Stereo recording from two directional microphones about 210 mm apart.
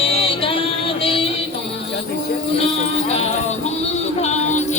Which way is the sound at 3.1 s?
30° left (ahead or behind).